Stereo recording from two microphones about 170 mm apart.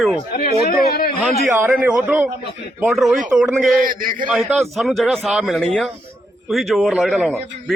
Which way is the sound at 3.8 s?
55° right (ahead or behind).